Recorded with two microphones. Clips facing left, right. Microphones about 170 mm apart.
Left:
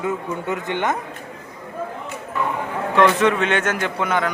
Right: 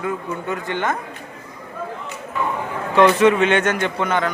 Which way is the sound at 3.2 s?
Centre (ahead or behind).